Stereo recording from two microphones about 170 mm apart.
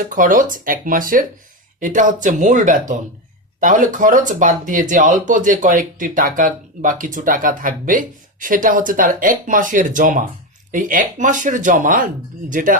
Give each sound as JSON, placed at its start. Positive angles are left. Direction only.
{"t": 0.1, "sound": "speech", "side_deg": -50}